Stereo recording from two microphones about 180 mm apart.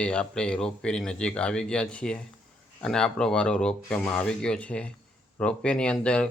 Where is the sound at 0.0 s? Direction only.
5° left (ahead or behind).